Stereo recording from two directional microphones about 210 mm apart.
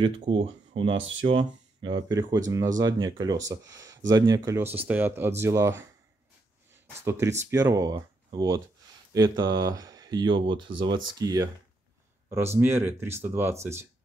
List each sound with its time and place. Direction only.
0.0 s speech: 25° right (ahead or behind)
12.5 s speech: 10° right (ahead or behind)